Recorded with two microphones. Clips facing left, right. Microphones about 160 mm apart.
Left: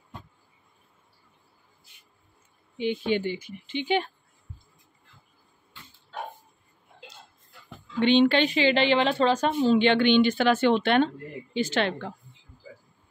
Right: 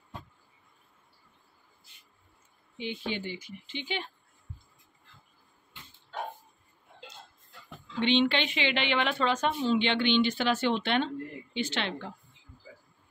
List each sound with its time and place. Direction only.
3.1 s speech: 55° left (ahead or behind)
8.0 s a woman's voice: 45° left (ahead or behind)